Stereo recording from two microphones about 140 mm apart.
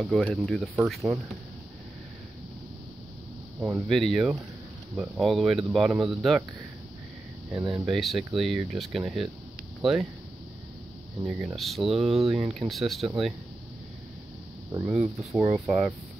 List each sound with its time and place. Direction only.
0.0 s speech: centre (ahead or behind)
3.9 s speech: centre (ahead or behind)
7.5 s speech: 20° right (ahead or behind)
7.8 s speech: centre (ahead or behind)
11.2 s speech: centre (ahead or behind)
14.9 s speech: 5° right (ahead or behind)